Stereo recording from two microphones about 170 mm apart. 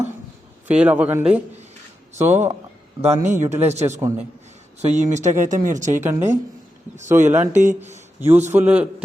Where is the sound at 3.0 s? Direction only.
40° right (ahead or behind).